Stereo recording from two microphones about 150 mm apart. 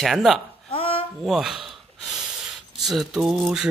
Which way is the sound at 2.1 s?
Centre (ahead or behind).